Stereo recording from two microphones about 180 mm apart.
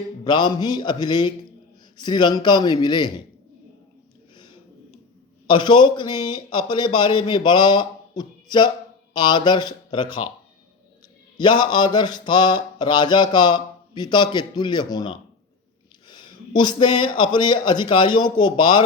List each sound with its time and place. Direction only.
0.3 s mantra: 25° left (ahead or behind)
5.5 s mantra: 25° left (ahead or behind)
11.3 s mantra: 25° left (ahead or behind)
16.0 s a sound: 25° left (ahead or behind)
16.6 s mantra: 25° left (ahead or behind)